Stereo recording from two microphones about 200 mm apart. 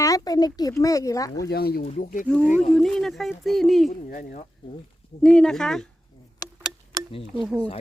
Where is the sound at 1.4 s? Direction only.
50° left (ahead or behind).